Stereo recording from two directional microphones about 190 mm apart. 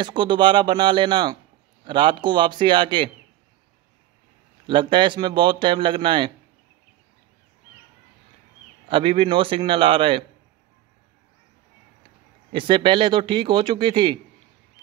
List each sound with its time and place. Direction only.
0.0 s a man's voice: 25° right (ahead or behind)
4.6 s a man's voice: 25° right (ahead or behind)
8.8 s a man's voice: 25° right (ahead or behind)
12.5 s a man's voice: 25° right (ahead or behind)